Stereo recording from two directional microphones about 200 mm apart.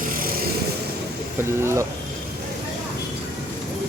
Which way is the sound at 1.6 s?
15° right (ahead or behind).